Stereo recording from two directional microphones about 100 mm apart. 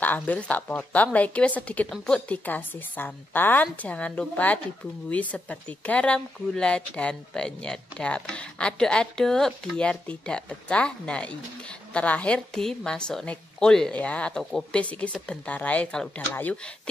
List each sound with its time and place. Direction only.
0.0 s speech: 15° left (ahead or behind)